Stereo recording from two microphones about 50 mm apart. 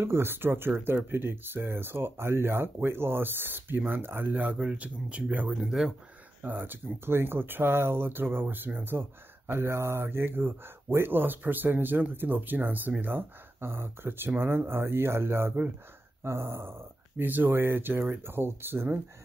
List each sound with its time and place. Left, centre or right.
0.0 s speech: right
4.6 s speech: right
5.6 s speech: centre
6.4 s speech: right
9.5 s speech: right
13.6 s speech: right
17.2 s speech: right